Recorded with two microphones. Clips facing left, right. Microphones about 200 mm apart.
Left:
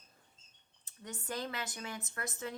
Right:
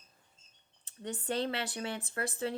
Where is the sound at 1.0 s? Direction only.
30° right (ahead or behind).